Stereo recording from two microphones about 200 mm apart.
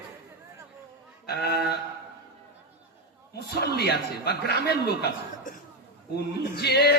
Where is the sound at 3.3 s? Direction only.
55° left (ahead or behind).